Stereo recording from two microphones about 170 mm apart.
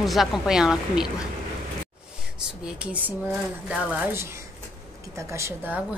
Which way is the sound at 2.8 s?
10° right (ahead or behind).